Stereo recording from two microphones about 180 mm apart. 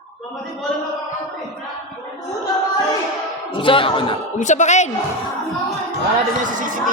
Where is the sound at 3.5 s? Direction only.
30° left (ahead or behind).